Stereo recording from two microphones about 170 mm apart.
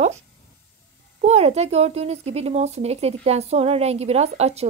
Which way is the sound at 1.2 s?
40° right (ahead or behind).